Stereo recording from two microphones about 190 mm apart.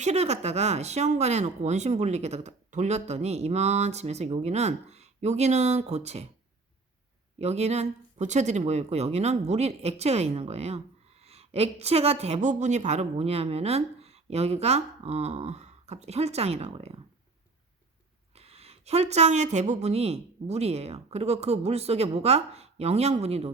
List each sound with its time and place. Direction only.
0.0 s speech: 35° right (ahead or behind)
7.3 s speech: 35° right (ahead or behind)
18.3 s speech: 30° right (ahead or behind)